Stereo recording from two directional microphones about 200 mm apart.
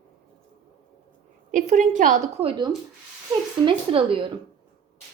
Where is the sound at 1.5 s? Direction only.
40° right (ahead or behind).